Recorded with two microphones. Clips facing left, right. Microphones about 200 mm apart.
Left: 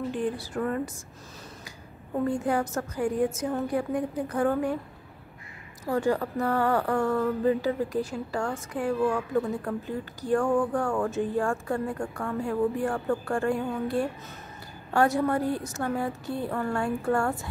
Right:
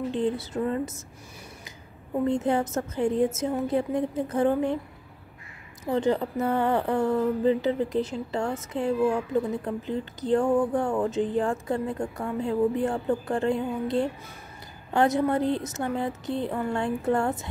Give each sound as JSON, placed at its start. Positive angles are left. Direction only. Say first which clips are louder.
{"t": 0.1, "sound": "speech", "louder": "right 3 dB", "side_deg": -20}
{"t": 2.2, "sound": "speech", "louder": "right 2 dB", "side_deg": -20}
{"t": 5.9, "sound": "speech", "louder": "right 1 dB", "side_deg": -20}